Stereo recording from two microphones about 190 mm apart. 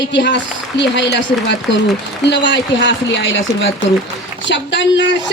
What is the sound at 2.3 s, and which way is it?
A man's voice, 65° left (ahead or behind).